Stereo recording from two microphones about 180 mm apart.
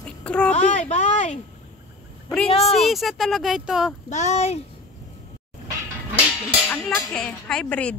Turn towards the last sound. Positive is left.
turn(degrees=5)  # may be behind; listen again after turning